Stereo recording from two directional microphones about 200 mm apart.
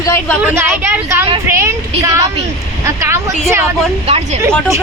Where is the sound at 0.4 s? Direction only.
10° right (ahead or behind).